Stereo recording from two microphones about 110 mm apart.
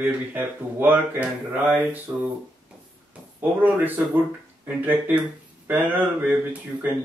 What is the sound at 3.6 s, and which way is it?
Speech, 15° right (ahead or behind).